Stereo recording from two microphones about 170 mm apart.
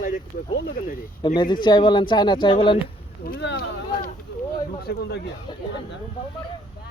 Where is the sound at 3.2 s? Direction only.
90° left.